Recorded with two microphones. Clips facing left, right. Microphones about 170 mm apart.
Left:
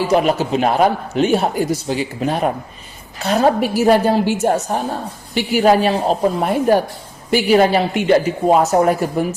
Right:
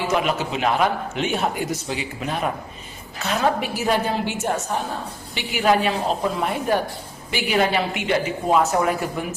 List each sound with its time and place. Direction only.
0.1 s a man's voice: 40° left (ahead or behind)